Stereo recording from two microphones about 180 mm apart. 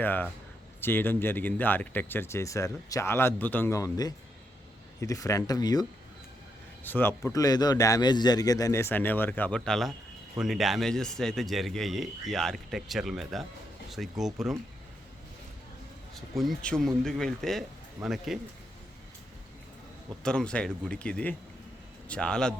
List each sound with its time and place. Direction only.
0.0 s speech: 10° left (ahead or behind)
6.8 s speech: 10° left (ahead or behind)
16.1 s speech: centre (ahead or behind)
20.2 s speech: 5° left (ahead or behind)